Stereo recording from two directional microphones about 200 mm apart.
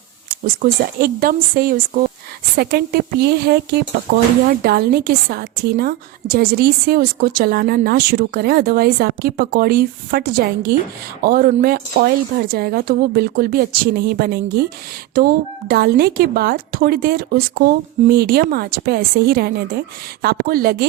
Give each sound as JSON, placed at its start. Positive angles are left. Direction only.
{"t": 0.3, "sound": "a woman's voice", "side_deg": -45}